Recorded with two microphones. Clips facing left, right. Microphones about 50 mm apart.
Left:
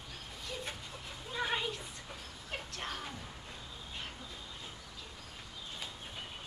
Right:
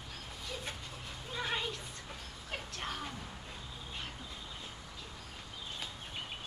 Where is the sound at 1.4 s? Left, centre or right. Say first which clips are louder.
Left 2 dB; centre.